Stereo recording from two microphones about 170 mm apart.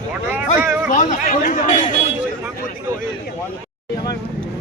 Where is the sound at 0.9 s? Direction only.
50° left (ahead or behind).